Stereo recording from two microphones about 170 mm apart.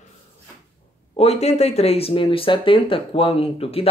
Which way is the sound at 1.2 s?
40° left (ahead or behind).